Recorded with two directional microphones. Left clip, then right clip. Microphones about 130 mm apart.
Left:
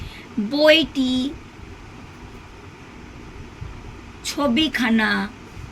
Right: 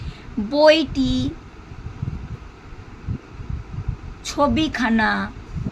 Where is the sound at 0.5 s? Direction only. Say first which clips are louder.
Right 1 dB; 55° right (ahead or behind).